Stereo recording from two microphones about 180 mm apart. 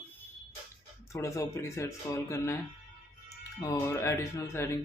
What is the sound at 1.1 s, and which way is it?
Speech, 15° left (ahead or behind).